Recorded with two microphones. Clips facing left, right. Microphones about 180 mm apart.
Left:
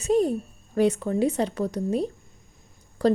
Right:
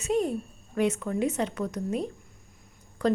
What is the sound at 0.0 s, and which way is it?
A woman's voice, 35° left (ahead or behind).